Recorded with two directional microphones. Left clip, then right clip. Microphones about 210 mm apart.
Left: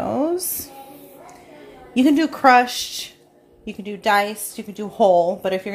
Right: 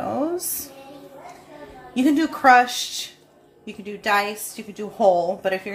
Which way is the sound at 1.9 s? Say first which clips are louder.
Left 3 dB; 35° left (ahead or behind).